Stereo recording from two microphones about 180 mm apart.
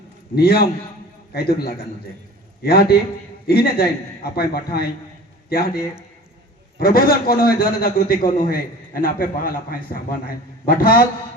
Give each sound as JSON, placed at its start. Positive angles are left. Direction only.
{"t": 0.3, "sound": "a man's voice", "side_deg": 55}